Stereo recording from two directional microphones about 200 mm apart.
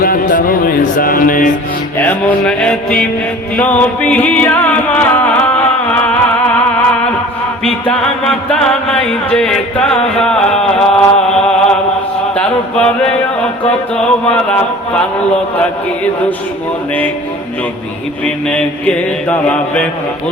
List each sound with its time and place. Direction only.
0.0 s music: 45° left (ahead or behind)
2.0 s music: 10° left (ahead or behind)
7.6 s music: 5° left (ahead or behind)
10.2 s a sound: 5° left (ahead or behind)
12.3 s music: 5° left (ahead or behind)
18.4 s mantra: 5° left (ahead or behind)